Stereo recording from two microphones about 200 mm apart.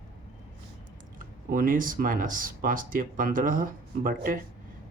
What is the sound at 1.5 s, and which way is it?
Speech, 45° right (ahead or behind).